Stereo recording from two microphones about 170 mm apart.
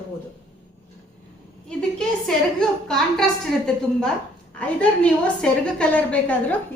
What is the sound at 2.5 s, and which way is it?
Speech, 5° left (ahead or behind).